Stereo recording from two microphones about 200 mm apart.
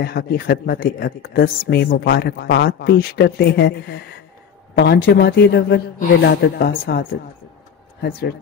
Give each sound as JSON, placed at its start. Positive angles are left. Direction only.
{"t": 0.0, "sound": "speech", "side_deg": 50}